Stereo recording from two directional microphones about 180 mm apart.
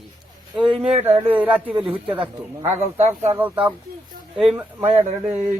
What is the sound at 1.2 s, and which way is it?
Speech, 10° right (ahead or behind).